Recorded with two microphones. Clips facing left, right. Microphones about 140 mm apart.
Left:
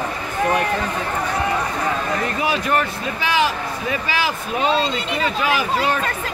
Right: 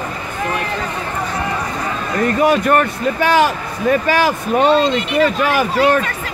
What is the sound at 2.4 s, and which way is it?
Speech, 55° right (ahead or behind).